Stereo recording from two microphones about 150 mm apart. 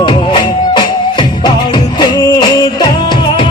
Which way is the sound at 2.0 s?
25° left (ahead or behind).